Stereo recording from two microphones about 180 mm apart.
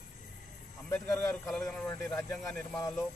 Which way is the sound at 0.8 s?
15° left (ahead or behind).